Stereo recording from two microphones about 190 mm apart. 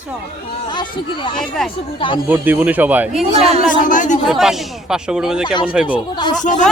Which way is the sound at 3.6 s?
45° left (ahead or behind).